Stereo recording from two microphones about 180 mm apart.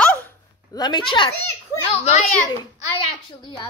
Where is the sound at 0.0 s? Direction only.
10° left (ahead or behind).